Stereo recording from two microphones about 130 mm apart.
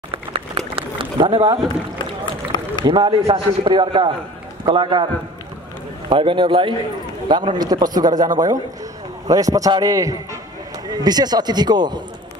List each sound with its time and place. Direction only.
0.1 s a sound: 45° right (ahead or behind)
2.8 s a man's voice: 40° right (ahead or behind)
6.0 s a man's voice: 40° right (ahead or behind)